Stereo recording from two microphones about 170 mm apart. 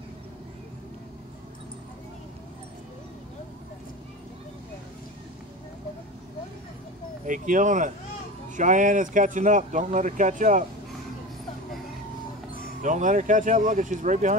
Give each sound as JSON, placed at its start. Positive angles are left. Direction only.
{"t": 7.2, "sound": "speech", "side_deg": -50}
{"t": 12.8, "sound": "speech", "side_deg": -45}